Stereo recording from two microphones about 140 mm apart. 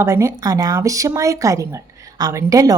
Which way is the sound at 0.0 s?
20° right (ahead or behind).